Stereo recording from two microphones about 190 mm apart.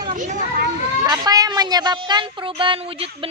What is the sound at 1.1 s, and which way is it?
Speech, 20° right (ahead or behind).